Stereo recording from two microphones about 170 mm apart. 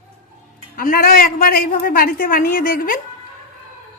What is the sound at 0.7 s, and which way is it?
A man's voice, 60° left (ahead or behind).